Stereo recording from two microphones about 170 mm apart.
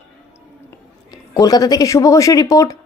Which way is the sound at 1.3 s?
20° left (ahead or behind).